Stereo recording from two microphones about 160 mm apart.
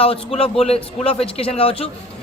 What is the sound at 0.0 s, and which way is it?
A man's voice, 35° left (ahead or behind).